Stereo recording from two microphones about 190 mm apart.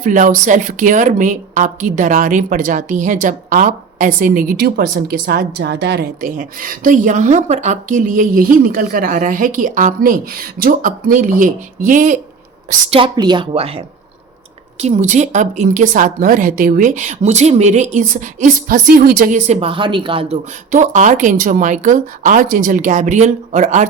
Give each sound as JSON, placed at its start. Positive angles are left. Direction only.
{"t": 0.0, "sound": "speech", "side_deg": -45}
{"t": 12.9, "sound": "a woman's voice", "side_deg": -25}